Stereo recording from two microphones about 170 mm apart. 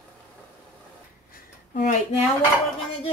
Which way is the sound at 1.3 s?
50° left (ahead or behind).